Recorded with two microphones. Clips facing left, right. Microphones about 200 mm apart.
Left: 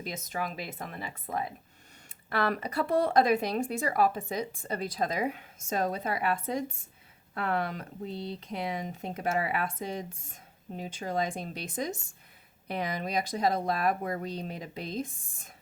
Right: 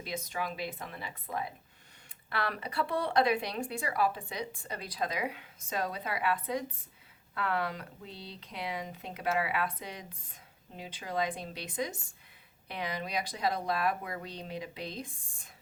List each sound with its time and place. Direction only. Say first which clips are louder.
0.3 s speech: left 3 dB; 45° left (ahead or behind)